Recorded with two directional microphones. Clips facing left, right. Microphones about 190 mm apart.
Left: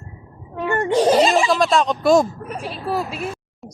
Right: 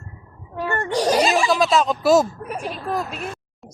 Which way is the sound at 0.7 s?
15° left (ahead or behind).